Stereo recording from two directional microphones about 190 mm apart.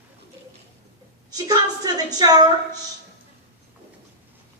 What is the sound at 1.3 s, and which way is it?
A woman's voice, 20° right (ahead or behind).